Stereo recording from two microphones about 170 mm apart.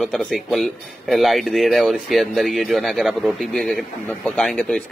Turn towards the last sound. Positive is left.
turn(degrees=5)  # may be behind; listen again after turning